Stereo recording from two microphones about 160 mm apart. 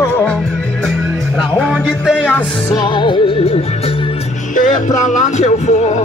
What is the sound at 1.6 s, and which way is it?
Music, centre (ahead or behind).